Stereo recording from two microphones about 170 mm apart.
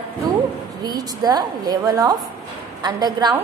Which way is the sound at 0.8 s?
20° right (ahead or behind).